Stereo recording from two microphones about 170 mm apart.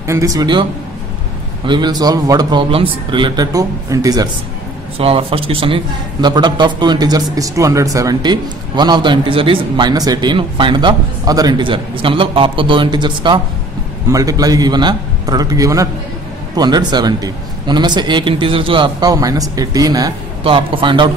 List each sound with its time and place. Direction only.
0.0 s a man's voice: 20° right (ahead or behind)
1.7 s a man's voice: 25° right (ahead or behind)
4.9 s a man's voice: 35° right (ahead or behind)